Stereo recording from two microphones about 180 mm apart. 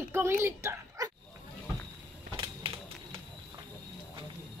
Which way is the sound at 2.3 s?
30° right (ahead or behind).